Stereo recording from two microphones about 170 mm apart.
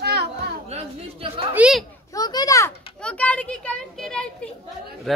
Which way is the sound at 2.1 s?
25° left (ahead or behind).